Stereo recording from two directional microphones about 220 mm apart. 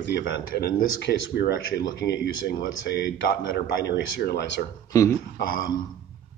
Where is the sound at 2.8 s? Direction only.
50° left (ahead or behind).